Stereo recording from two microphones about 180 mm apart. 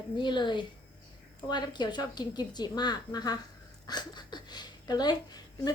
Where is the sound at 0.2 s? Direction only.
25° left (ahead or behind).